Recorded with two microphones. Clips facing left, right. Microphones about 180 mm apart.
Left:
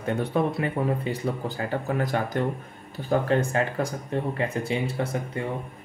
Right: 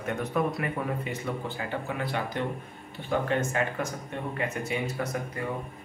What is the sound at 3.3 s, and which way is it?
Speech, 35° left (ahead or behind).